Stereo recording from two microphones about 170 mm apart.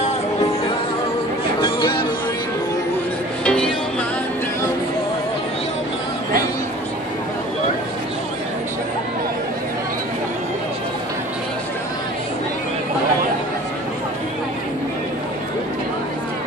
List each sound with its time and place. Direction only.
1.6 s music: 25° left (ahead or behind)
3.4 s music: 5° left (ahead or behind)